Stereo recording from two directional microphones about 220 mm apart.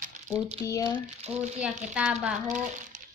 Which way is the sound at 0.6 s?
15° left (ahead or behind).